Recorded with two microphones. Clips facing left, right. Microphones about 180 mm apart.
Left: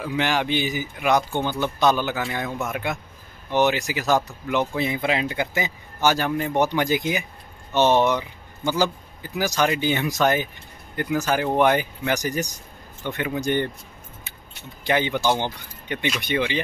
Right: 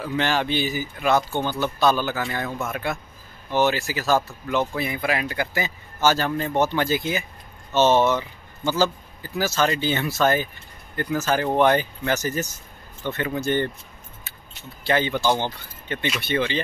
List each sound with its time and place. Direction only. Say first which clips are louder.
0.0 s speech: even; 15° left (ahead or behind)
14.8 s speech: even; 15° left (ahead or behind)